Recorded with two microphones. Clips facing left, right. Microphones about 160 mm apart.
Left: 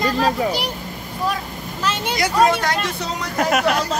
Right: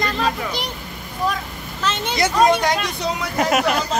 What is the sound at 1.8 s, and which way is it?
Vehicle, 10° left (ahead or behind).